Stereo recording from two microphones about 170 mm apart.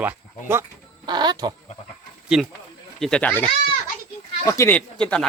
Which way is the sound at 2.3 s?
5° right (ahead or behind).